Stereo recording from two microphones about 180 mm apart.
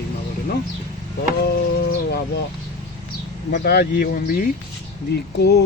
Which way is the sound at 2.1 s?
65° left (ahead or behind).